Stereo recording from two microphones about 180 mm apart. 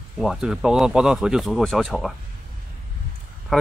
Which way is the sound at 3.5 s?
Centre (ahead or behind).